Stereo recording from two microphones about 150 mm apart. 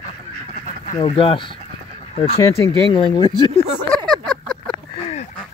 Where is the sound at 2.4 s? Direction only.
20° left (ahead or behind).